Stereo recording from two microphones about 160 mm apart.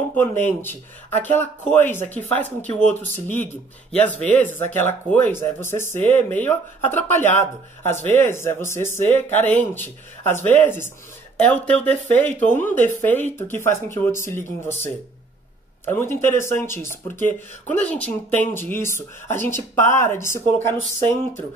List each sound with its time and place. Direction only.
0.1 s speech: 15° left (ahead or behind)
15.8 s speech: 15° left (ahead or behind)